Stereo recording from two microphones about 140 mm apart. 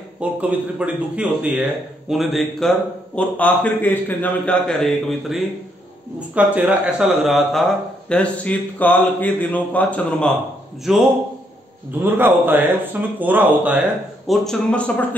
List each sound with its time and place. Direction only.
0.2 s a man's voice: 10° right (ahead or behind)
3.2 s a man's voice: 10° left (ahead or behind)
6.1 s a man's voice: 10° right (ahead or behind)
11.9 s a man's voice: 15° right (ahead or behind)
14.2 s a man's voice: centre (ahead or behind)